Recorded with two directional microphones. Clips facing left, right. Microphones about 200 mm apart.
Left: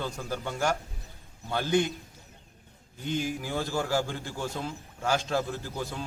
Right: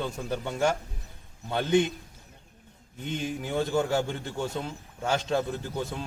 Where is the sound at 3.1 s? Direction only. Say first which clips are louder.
Right 2 dB; 25° right (ahead or behind).